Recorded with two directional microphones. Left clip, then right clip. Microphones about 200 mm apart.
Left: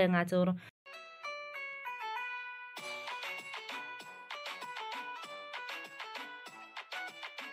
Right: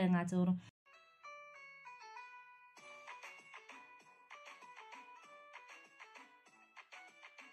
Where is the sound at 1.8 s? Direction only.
55° left (ahead or behind).